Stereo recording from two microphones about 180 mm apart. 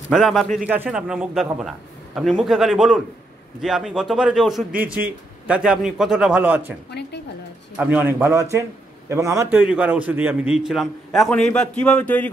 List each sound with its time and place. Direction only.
0.1 s a man's voice: centre (ahead or behind)
6.9 s a woman's voice: 65° left (ahead or behind)
7.7 s a man's voice: 10° right (ahead or behind); by 12.3 s 10° left (ahead or behind)